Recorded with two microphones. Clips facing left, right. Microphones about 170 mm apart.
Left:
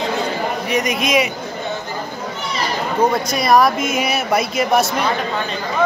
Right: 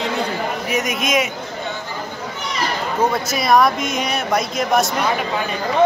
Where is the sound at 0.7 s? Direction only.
5° right (ahead or behind).